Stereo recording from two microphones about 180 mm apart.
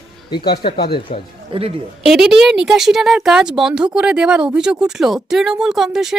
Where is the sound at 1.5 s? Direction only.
30° right (ahead or behind).